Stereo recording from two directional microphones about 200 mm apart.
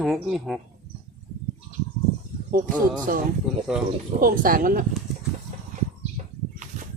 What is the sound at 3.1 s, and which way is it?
Speech, 40° right (ahead or behind).